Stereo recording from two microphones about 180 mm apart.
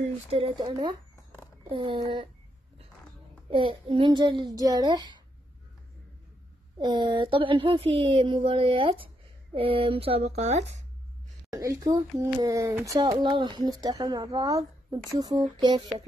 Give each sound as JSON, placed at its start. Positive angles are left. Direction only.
{"t": 0.3, "sound": "speech", "side_deg": -30}
{"t": 3.4, "sound": "speech", "side_deg": -30}
{"t": 6.8, "sound": "speech", "side_deg": -25}
{"t": 11.5, "sound": "speech", "side_deg": -20}